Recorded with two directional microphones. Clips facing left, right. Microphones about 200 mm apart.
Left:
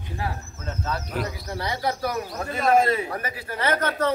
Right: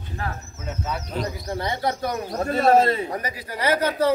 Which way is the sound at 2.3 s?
35° right (ahead or behind).